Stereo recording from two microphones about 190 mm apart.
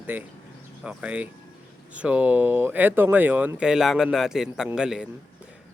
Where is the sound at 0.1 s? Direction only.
10° right (ahead or behind).